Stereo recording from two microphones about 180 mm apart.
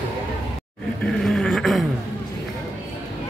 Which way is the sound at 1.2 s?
Centre (ahead or behind).